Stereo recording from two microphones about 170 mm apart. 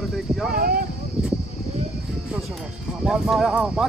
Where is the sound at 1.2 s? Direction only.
5° right (ahead or behind).